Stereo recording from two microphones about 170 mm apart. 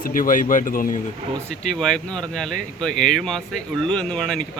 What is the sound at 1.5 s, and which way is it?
Speech, 5° left (ahead or behind).